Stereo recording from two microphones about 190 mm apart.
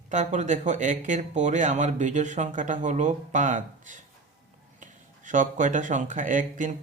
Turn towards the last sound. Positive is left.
turn(degrees=-45)  # may be behind; listen again after turning